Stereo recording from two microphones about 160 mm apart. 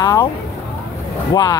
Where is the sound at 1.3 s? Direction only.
25° left (ahead or behind).